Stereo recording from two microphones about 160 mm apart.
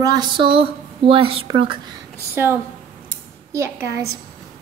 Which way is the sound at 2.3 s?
15° right (ahead or behind).